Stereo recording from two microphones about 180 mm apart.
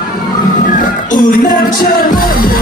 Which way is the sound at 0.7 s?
50° left (ahead or behind).